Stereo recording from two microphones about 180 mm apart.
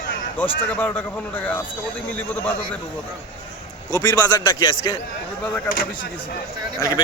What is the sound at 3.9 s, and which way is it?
Speech, 20° left (ahead or behind).